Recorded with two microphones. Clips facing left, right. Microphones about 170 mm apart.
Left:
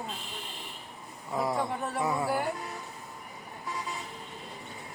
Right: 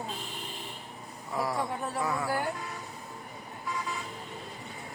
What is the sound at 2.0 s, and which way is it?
Speech, 20° left (ahead or behind).